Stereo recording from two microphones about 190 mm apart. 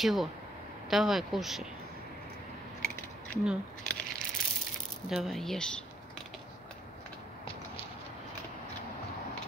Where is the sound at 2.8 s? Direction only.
Centre (ahead or behind).